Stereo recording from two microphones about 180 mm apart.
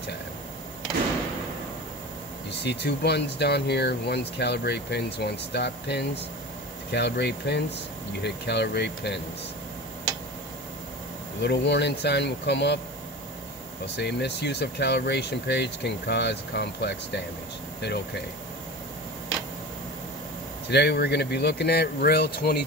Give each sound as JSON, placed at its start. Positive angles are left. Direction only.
{"t": 2.6, "sound": "speech", "side_deg": 65}
{"t": 11.4, "sound": "speech", "side_deg": 70}
{"t": 13.9, "sound": "speech", "side_deg": 70}
{"t": 20.6, "sound": "speech", "side_deg": 65}